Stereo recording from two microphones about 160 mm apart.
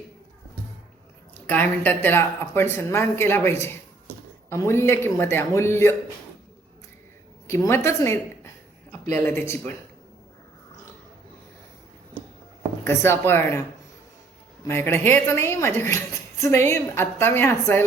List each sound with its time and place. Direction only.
1.5 s a woman's voice: 10° left (ahead or behind)
7.4 s a woman's voice: 15° left (ahead or behind)
12.8 s a woman's voice: 15° left (ahead or behind)
14.6 s a woman's voice: 15° left (ahead or behind)